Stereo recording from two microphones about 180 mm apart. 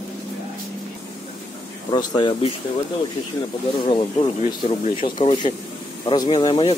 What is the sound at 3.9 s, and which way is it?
Speech, 30° left (ahead or behind).